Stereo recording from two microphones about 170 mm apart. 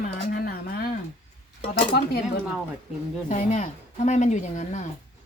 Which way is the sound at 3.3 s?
45° left (ahead or behind).